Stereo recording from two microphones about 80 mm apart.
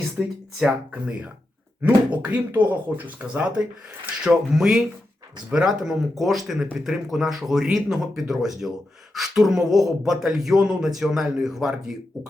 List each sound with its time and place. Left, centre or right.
0.2 s speech: centre